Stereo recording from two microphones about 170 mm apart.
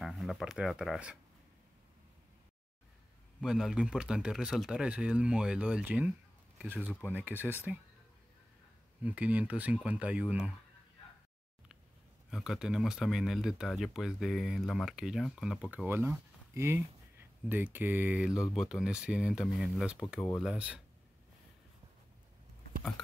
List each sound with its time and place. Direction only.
0.0 s speech: centre (ahead or behind)
3.3 s speech: centre (ahead or behind)
9.0 s speech: 10° right (ahead or behind)
12.3 s speech: 5° right (ahead or behind)